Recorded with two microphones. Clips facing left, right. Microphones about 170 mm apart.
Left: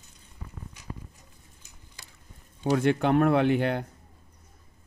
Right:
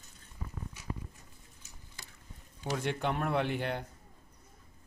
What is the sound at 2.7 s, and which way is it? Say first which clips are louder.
Speech: left 11 dB; 85° left.